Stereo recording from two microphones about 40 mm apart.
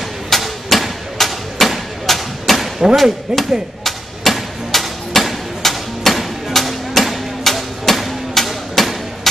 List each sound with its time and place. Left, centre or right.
0.3 s a sound: centre
3.3 s speech: centre
3.8 s hammer: centre